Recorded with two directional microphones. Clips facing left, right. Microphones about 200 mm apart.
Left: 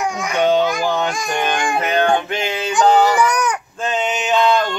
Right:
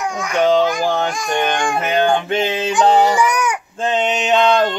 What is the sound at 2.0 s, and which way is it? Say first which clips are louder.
Speech: right 2 dB; 25° right (ahead or behind).